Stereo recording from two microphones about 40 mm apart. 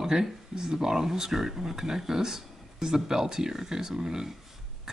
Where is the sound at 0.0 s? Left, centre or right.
Centre.